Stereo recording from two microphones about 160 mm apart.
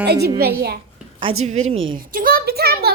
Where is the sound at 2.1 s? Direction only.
65° right (ahead or behind).